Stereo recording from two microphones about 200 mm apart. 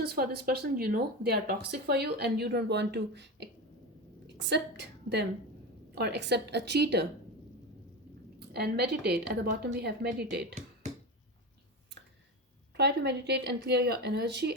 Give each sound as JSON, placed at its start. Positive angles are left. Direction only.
{"t": 0.0, "sound": "a woman's voice", "side_deg": -50}
{"t": 8.4, "sound": "a woman's voice", "side_deg": -55}
{"t": 12.7, "sound": "a woman's voice", "side_deg": -55}